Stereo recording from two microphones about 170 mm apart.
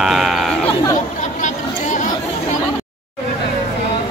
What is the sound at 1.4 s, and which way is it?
Chatter, 45° left (ahead or behind).